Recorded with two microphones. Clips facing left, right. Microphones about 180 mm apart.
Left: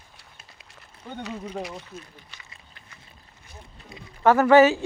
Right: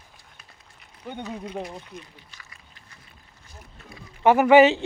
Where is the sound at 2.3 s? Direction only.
70° left (ahead or behind).